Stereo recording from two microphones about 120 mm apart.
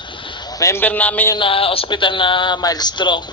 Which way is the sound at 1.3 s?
50° left (ahead or behind).